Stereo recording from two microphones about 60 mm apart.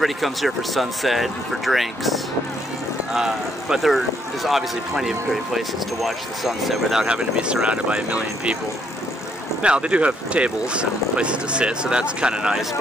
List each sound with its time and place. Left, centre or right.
0.0 s speech: centre
7.1 s speech: centre
9.6 s speech: centre